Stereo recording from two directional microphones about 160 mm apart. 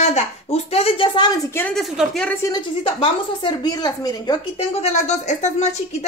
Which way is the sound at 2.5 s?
30° left (ahead or behind).